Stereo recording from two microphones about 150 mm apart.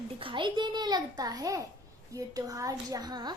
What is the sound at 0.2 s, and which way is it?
A child's voice, 35° right (ahead or behind).